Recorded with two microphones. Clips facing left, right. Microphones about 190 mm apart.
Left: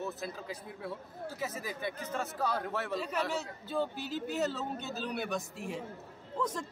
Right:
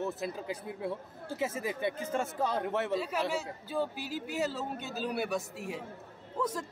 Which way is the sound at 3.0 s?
5° right (ahead or behind).